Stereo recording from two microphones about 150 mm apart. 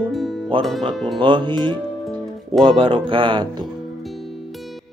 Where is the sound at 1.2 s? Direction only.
30° right (ahead or behind).